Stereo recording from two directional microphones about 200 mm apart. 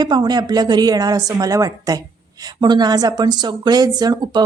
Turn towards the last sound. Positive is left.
turn(degrees=-20)  # may be behind; listen again after turning